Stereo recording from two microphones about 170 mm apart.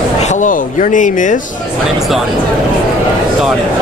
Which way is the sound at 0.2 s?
45° left (ahead or behind).